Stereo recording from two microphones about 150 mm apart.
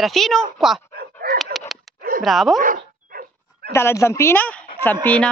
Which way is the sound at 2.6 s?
70° right (ahead or behind).